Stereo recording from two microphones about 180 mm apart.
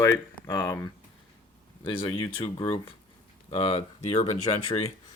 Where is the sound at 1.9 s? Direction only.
25° left (ahead or behind).